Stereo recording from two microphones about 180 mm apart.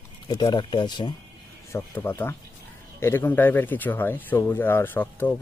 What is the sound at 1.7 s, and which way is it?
Speech, 15° left (ahead or behind).